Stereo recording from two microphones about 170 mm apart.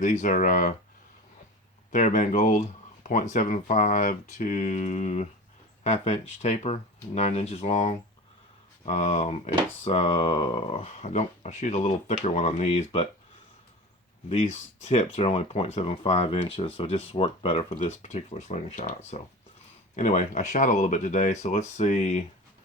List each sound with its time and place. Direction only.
0.0 s speech: 45° left (ahead or behind)
1.9 s speech: 45° left (ahead or behind)
14.8 s speech: 35° left (ahead or behind)